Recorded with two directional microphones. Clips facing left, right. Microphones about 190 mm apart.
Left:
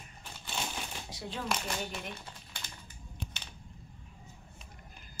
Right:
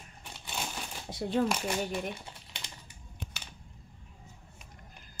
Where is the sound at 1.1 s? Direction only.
55° right (ahead or behind).